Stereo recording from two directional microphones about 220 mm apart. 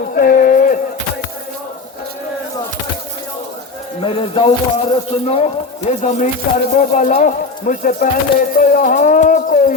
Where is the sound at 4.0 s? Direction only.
25° left (ahead or behind).